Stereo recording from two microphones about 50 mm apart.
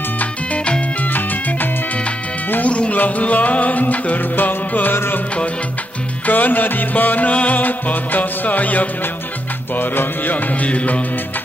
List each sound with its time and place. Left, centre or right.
0.2 s music: left
2.5 s speech: left
3.0 s music: left
6.2 s music: left